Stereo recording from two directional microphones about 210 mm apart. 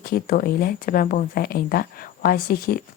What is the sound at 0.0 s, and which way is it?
Speech, 45° left (ahead or behind).